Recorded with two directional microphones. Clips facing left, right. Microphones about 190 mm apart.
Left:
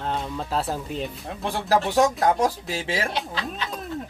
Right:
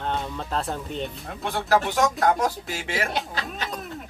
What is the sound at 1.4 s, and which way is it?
Speech, 35° left (ahead or behind).